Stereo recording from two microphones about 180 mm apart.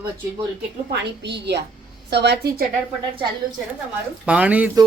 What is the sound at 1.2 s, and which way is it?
A woman's voice, 70° right (ahead or behind).